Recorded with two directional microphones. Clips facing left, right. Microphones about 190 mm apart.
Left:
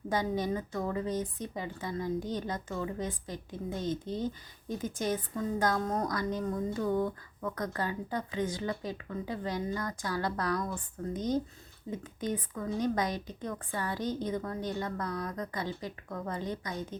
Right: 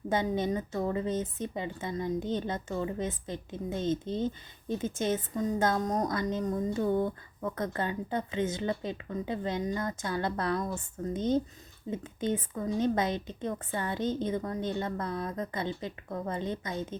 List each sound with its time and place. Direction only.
0.1 s a woman's voice: 25° right (ahead or behind)